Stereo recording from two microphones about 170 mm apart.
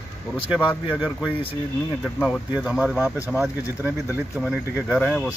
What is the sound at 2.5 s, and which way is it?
Speech, 5° right (ahead or behind).